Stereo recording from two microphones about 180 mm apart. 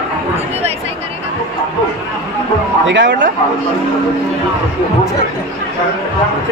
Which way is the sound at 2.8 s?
90° right.